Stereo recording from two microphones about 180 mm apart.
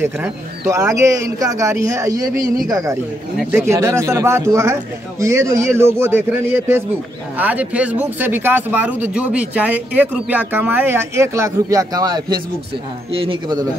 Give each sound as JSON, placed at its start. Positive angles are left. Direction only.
{"t": 0.0, "sound": "speech", "side_deg": -15}